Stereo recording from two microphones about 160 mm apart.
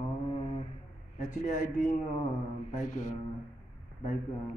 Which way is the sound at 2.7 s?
55° left (ahead or behind).